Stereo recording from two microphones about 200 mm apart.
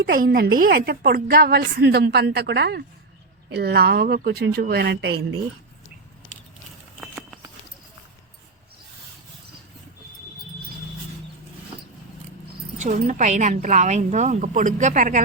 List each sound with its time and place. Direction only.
0.0 s a woman's voice: 50° right (ahead or behind)
12.8 s speech: 40° right (ahead or behind)